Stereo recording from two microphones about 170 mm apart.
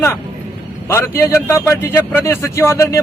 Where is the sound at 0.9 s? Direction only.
15° left (ahead or behind).